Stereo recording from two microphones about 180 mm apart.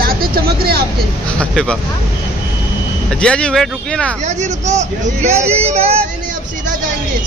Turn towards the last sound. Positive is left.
turn(degrees=-35)  # may be behind; listen again after turning